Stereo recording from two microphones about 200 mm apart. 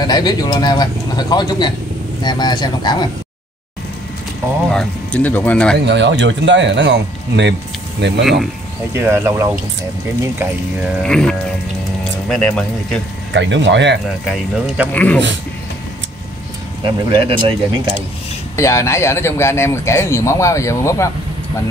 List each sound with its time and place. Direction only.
0.0 s speech: 20° left (ahead or behind)
4.6 s speech: 5° left (ahead or behind)
5.9 s speech: 60° right (ahead or behind)
8.9 s speech: 10° right (ahead or behind)
11.0 s speech: 5° left (ahead or behind)
13.3 s speech: 65° right (ahead or behind)
14.2 s speech: centre (ahead or behind)
16.8 s speech: 25° right (ahead or behind)
18.6 s speech: 15° left (ahead or behind)